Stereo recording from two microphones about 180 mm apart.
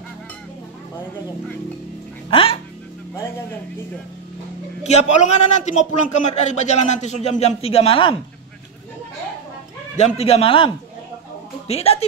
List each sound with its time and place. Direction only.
2.3 s a man's voice: 30° left (ahead or behind)
4.8 s a man's voice: 40° left (ahead or behind)
9.9 s a man's voice: 35° left (ahead or behind)